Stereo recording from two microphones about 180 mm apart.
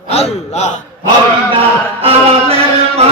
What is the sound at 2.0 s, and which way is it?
Music, 30° right (ahead or behind).